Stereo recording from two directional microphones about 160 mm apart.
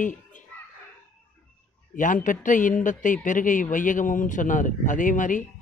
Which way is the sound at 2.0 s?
55° left (ahead or behind).